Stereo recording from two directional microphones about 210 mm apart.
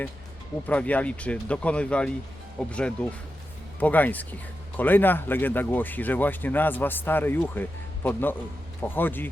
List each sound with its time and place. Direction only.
0.7 s speech: 5° left (ahead or behind)